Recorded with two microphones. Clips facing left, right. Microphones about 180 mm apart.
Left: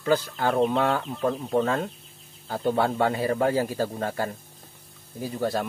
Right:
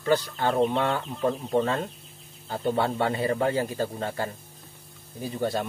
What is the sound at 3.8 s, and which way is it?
Speech, 15° right (ahead or behind).